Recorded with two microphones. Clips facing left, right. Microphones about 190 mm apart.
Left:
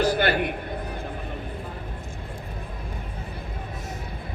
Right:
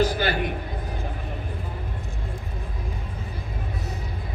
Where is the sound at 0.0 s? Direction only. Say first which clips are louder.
Left 1 dB; 60° left (ahead or behind).